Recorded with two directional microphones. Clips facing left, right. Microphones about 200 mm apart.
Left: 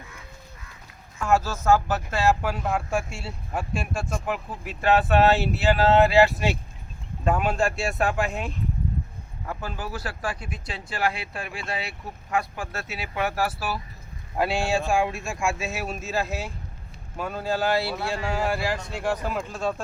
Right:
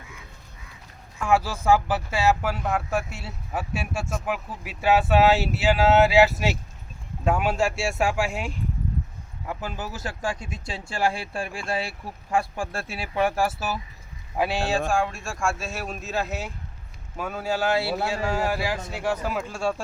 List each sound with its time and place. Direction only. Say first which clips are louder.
1.3 s speech: even; 15° right (ahead or behind)
14.4 s speech: even; centre (ahead or behind)